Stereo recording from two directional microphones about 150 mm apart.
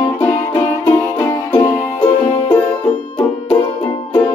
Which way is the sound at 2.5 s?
10° left (ahead or behind).